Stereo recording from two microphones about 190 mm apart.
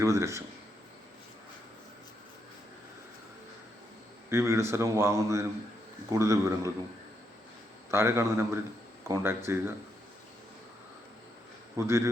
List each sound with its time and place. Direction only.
0.0 s a man's voice: 15° right (ahead or behind)
4.3 s a man's voice: 15° right (ahead or behind)
7.9 s a man's voice: 15° right (ahead or behind)
11.8 s a man's voice: 15° right (ahead or behind)